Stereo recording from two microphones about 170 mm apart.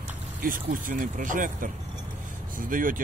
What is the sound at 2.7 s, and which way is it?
Speech, 50° right (ahead or behind).